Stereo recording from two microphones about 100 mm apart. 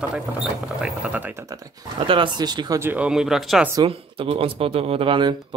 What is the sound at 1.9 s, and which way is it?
Speech, 55° right (ahead or behind).